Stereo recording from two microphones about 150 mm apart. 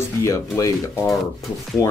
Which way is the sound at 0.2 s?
20° left (ahead or behind).